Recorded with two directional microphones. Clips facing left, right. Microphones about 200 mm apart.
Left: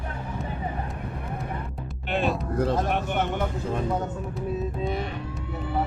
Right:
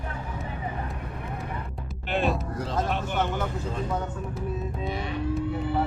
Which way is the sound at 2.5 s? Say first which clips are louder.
Left 4 dB; 60° left (ahead or behind).